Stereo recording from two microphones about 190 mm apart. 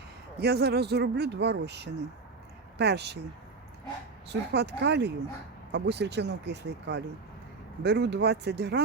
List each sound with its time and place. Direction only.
0.4 s speech: 60° right (ahead or behind)
4.3 s speech: 65° right (ahead or behind)